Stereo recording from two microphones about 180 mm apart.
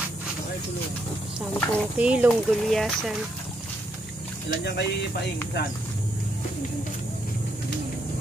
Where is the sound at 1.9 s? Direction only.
5° right (ahead or behind).